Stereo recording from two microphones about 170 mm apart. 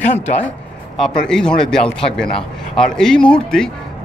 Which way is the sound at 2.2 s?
30° left (ahead or behind).